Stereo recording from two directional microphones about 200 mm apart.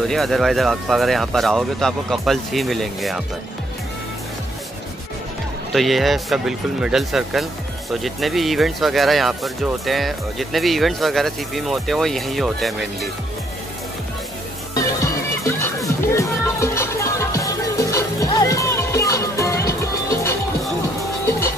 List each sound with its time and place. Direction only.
0.0 s speech: centre (ahead or behind)
5.7 s speech: centre (ahead or behind)
14.7 s music: 15° left (ahead or behind)